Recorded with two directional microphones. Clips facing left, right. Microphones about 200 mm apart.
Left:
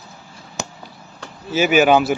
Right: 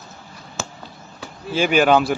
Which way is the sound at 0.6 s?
15° left (ahead or behind).